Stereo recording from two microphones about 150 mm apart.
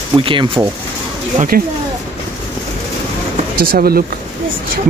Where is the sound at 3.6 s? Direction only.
90° right.